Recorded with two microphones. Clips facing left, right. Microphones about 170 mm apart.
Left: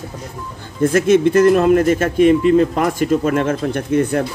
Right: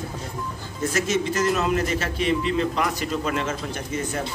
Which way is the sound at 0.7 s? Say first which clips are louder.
Left 11 dB; 55° left (ahead or behind).